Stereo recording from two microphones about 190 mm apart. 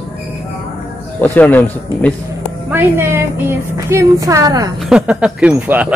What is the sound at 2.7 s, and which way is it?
A woman's voice, 10° right (ahead or behind).